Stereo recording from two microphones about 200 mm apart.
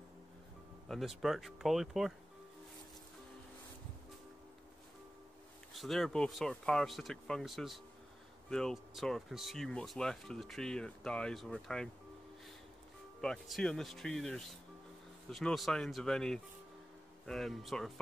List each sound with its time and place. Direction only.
0.8 s speech: centre (ahead or behind)
5.7 s speech: centre (ahead or behind)
13.2 s speech: 5° left (ahead or behind)